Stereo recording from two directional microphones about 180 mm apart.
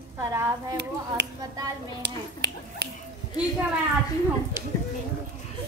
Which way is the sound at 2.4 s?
70° right (ahead or behind).